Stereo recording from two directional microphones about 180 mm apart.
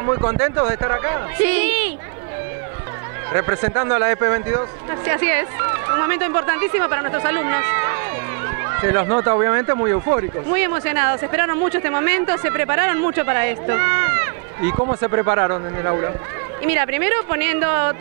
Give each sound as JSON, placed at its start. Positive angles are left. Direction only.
{"t": 0.0, "sound": "speech", "side_deg": -30}
{"t": 3.3, "sound": "speech", "side_deg": -25}
{"t": 14.8, "sound": "speech", "side_deg": -30}